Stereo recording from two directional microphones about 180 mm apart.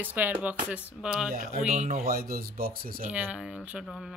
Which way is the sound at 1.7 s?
45° right (ahead or behind).